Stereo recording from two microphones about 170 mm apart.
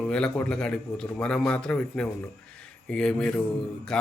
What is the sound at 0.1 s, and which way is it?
A man's voice, 5° left (ahead or behind).